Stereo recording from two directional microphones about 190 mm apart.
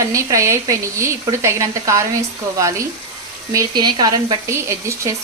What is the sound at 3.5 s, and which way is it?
Speech, 20° right (ahead or behind).